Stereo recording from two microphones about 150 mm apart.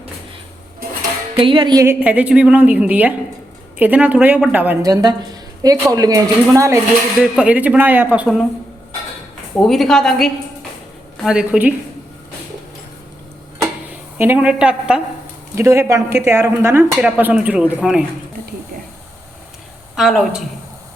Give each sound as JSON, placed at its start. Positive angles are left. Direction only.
{"t": 1.4, "sound": "music", "side_deg": -35}
{"t": 1.8, "sound": "a woman's voice", "side_deg": -15}
{"t": 4.8, "sound": "a woman's voice", "side_deg": -25}
{"t": 7.2, "sound": "a woman's voice", "side_deg": -5}
{"t": 9.6, "sound": "a woman's voice", "side_deg": 0}
{"t": 14.2, "sound": "a woman's voice", "side_deg": -10}
{"t": 15.5, "sound": "a woman's voice", "side_deg": -20}
{"t": 20.0, "sound": "a woman's voice", "side_deg": 0}